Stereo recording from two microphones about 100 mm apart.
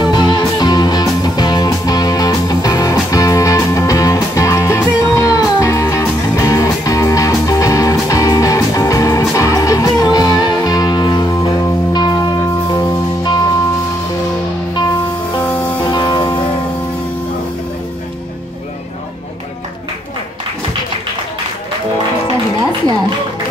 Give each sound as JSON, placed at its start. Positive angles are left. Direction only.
{"t": 0.0, "sound": "music", "side_deg": 45}
{"t": 15.8, "sound": "music", "side_deg": 50}